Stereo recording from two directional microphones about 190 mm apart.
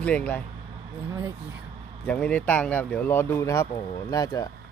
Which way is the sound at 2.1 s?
10° left (ahead or behind).